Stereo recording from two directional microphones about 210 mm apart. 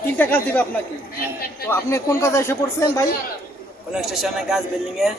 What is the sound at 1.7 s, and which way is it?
A woman's voice, 15° left (ahead or behind).